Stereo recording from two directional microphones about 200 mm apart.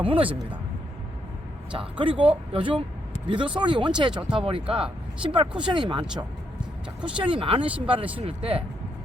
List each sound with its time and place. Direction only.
0.0 s speech: 25° right (ahead or behind)
1.7 s speech: 25° right (ahead or behind)